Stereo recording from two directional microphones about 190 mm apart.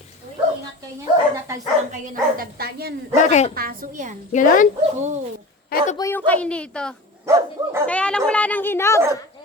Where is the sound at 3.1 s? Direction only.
35° left (ahead or behind).